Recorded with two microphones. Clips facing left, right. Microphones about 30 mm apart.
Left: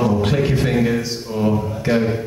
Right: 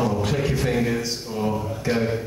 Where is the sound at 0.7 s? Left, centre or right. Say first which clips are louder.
Left 4 dB; centre.